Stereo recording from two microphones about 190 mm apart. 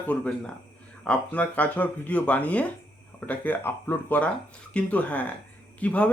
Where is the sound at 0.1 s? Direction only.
5° left (ahead or behind).